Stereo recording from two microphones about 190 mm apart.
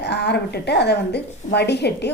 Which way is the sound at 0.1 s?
60° left (ahead or behind).